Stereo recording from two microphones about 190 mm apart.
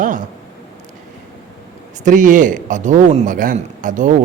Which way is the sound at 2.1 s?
45° right (ahead or behind).